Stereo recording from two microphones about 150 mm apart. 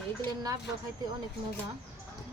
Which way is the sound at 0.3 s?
25° right (ahead or behind).